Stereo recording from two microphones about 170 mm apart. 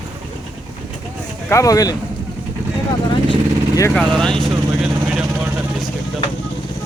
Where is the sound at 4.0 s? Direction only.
5° left (ahead or behind).